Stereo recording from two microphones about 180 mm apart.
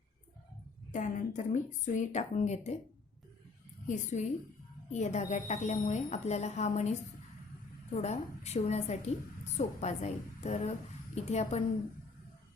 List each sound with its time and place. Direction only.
0.9 s a woman's voice: 45° left (ahead or behind)
3.8 s a woman's voice: 45° left (ahead or behind)
7.9 s a woman's voice: 35° left (ahead or behind)